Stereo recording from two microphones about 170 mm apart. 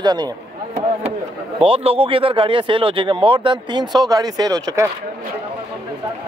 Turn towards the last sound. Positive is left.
turn(degrees=-20)  # may be behind; listen again after turning